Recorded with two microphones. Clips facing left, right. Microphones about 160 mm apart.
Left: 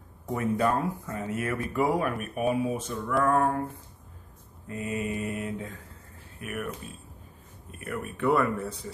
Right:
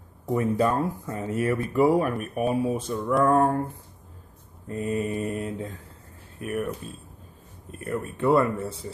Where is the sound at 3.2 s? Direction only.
35° right (ahead or behind).